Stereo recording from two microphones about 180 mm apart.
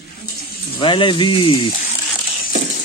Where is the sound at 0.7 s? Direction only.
25° left (ahead or behind).